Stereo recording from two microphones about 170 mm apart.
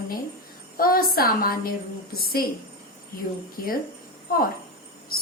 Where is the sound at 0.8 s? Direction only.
60° left (ahead or behind).